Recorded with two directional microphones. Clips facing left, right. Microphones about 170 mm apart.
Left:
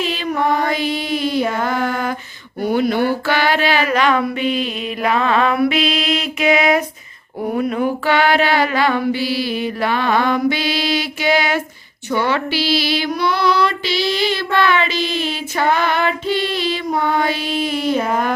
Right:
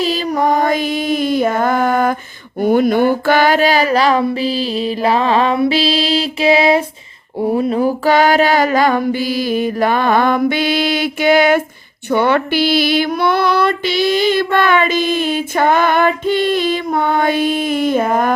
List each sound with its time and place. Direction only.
0.0 s music: 40° right (ahead or behind)
2.6 s a sound: 50° right (ahead or behind); by 6.8 s 30° right (ahead or behind)
7.3 s female singing: 25° right (ahead or behind); by 18.3 s 50° right (ahead or behind)